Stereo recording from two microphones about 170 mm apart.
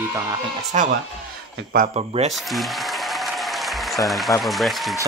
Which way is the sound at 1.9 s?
40° right (ahead or behind).